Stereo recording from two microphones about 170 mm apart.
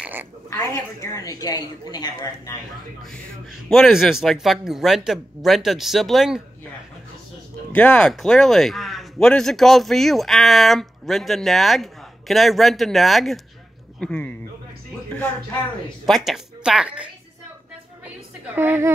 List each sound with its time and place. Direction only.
0.0 s oink: 10° right (ahead or behind)
0.5 s a woman's voice: 20° left (ahead or behind)
3.7 s a man's voice: centre (ahead or behind)
7.7 s a man's voice: 5° left (ahead or behind)
16.1 s a man's voice: 5° right (ahead or behind)
18.0 s a sound: 10° right (ahead or behind)